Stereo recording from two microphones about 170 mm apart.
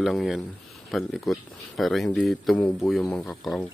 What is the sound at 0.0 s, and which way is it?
Speech, centre (ahead or behind).